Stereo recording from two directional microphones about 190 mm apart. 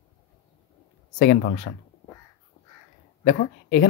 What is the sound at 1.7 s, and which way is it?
Speech, 85° left.